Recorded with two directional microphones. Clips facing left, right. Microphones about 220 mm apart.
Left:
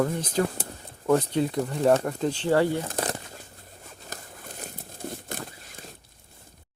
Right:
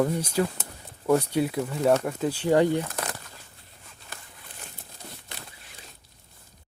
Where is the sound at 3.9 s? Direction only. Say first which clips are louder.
Left 5 dB; 45° left (ahead or behind).